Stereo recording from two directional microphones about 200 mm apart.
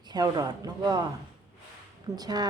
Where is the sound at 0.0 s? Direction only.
20° right (ahead or behind).